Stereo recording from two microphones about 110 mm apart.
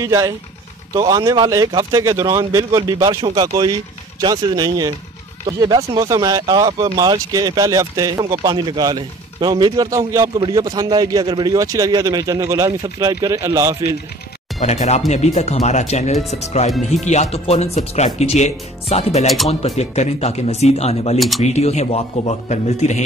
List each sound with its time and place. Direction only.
0.0 s a man's voice: 30° right (ahead or behind)
9.8 s a man's voice: 30° right (ahead or behind)
14.6 s speech: 85° left
19.2 s speech: centre (ahead or behind)
19.6 s speech: 85° left